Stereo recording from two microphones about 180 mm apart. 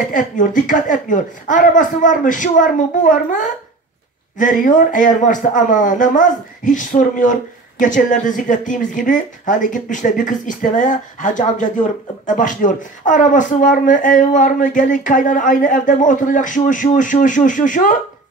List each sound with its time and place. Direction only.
0.1 s speech: 45° left (ahead or behind)